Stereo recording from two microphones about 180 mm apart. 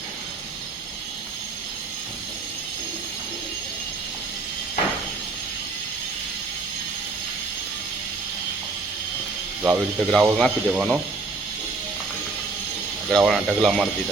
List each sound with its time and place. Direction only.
9.6 s speech: 5° right (ahead or behind)
13.1 s speech: centre (ahead or behind)